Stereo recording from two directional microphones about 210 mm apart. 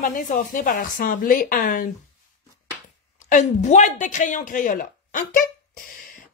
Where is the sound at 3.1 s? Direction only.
35° left (ahead or behind).